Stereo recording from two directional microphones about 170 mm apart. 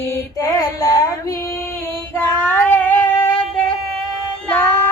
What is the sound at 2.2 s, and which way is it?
Female singing, 10° left (ahead or behind).